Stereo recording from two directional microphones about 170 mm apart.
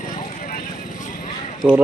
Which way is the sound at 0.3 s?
50° left (ahead or behind).